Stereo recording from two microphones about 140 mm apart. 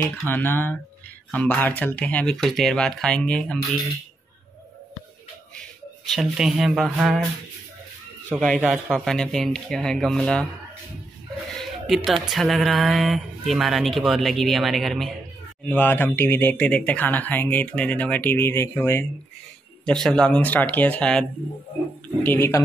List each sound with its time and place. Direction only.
0.3 s speech: 15° left (ahead or behind)
6.0 s speech: centre (ahead or behind)
8.4 s speech: 5° left (ahead or behind)
11.5 s speech: centre (ahead or behind)
15.6 s speech: 15° left (ahead or behind)
19.8 s speech: 5° left (ahead or behind)